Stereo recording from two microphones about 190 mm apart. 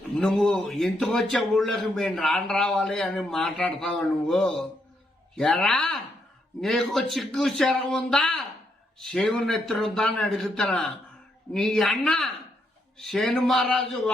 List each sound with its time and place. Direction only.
0.2 s a man's voice: centre (ahead or behind)